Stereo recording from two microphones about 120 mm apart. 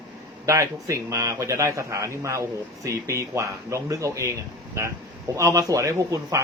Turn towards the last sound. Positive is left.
turn(degrees=-25)  # may be behind; listen again after turning